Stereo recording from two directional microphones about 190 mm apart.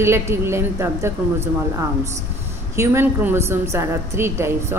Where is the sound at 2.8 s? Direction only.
15° right (ahead or behind).